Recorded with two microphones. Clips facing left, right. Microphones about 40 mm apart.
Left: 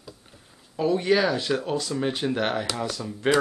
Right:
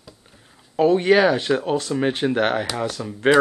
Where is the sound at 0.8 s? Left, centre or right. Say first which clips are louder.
Right 6 dB; right.